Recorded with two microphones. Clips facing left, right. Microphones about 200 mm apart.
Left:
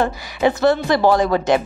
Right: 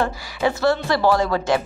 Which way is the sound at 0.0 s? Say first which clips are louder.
Left 3 dB; 20° left (ahead or behind).